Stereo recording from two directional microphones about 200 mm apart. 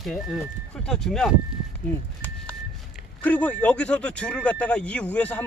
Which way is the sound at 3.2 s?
5° left (ahead or behind).